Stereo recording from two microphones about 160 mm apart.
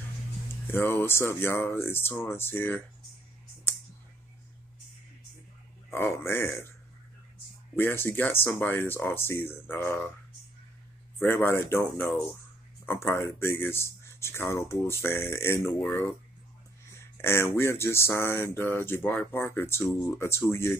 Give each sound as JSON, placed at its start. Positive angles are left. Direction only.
{"t": 0.7, "sound": "speech", "side_deg": 15}
{"t": 5.9, "sound": "speech", "side_deg": 15}
{"t": 7.7, "sound": "speech", "side_deg": 15}
{"t": 11.1, "sound": "speech", "side_deg": 15}